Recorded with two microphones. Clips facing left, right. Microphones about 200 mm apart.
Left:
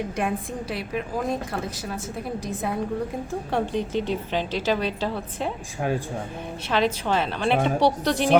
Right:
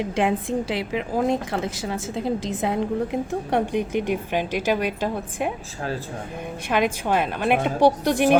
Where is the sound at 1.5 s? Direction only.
90° right.